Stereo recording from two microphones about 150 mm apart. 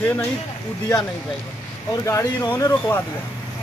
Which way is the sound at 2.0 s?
20° left (ahead or behind).